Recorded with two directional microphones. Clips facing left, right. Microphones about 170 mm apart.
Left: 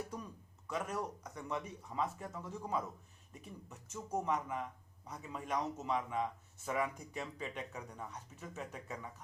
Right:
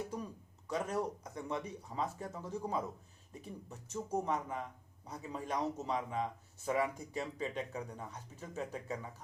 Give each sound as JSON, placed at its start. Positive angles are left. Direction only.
{"t": 0.7, "sound": "speech", "side_deg": -30}